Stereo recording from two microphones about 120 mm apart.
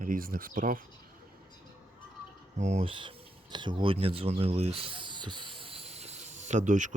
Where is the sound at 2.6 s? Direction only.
75° right (ahead or behind).